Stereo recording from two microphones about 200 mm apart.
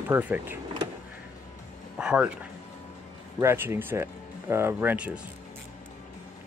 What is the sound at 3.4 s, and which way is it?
Speech, 10° right (ahead or behind).